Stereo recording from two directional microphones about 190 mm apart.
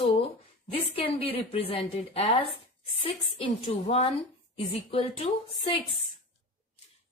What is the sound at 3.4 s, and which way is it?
Speech, 30° left (ahead or behind).